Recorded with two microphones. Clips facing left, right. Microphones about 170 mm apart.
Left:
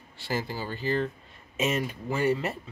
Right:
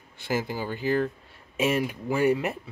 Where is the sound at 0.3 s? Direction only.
15° right (ahead or behind).